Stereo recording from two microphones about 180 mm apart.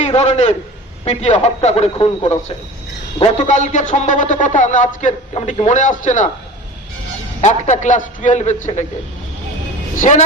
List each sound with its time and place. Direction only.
0.0 s a man's voice: 40° left (ahead or behind)
7.4 s a man's voice: 40° left (ahead or behind)
9.9 s a man's voice: 45° left (ahead or behind)